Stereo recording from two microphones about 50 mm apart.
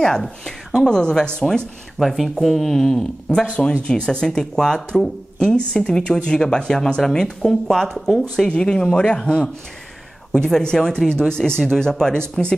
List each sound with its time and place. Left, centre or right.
0.0 s a woman's voice: centre
2.0 s speech: centre